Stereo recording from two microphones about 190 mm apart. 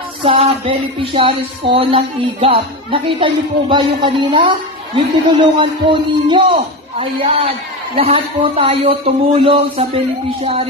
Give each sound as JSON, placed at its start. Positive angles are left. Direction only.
{"t": 0.2, "sound": "a man's voice", "side_deg": -30}